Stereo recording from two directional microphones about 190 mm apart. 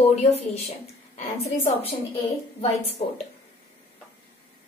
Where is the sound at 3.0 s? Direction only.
30° left (ahead or behind).